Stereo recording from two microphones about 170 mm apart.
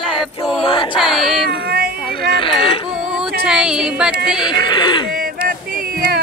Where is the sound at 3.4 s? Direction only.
5° right (ahead or behind).